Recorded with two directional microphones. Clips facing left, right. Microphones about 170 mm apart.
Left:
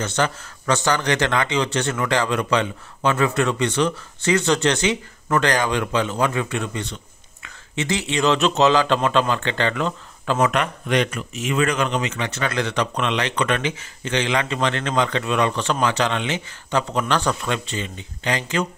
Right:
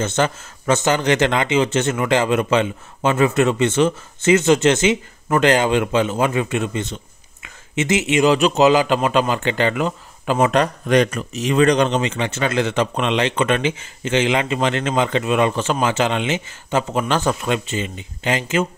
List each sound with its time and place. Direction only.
0.0 s a man's voice: 20° right (ahead or behind)
10.5 s speech: 40° right (ahead or behind); by 18.7 s 20° right (ahead or behind)